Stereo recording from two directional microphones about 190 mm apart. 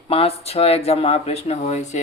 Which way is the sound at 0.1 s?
30° left (ahead or behind).